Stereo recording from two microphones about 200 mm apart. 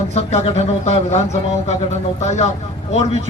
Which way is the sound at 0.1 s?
35° left (ahead or behind).